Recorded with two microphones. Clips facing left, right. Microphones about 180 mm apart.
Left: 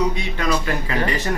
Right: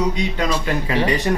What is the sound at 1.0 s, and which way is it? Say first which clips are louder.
Speech: right 3 dB; 15° right (ahead or behind).